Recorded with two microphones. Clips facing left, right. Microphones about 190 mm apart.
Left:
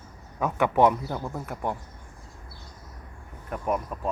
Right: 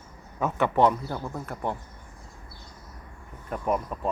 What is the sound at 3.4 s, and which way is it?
Speech, centre (ahead or behind).